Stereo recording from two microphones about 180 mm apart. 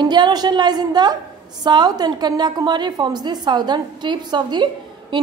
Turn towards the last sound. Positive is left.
turn(degrees=-25)  # may be behind; listen again after turning